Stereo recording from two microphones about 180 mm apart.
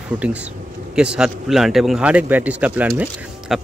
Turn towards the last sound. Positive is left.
turn(degrees=0)  # may be behind; listen again after turning